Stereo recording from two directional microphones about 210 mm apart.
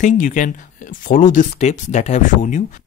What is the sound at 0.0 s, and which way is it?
Speech, 40° left (ahead or behind).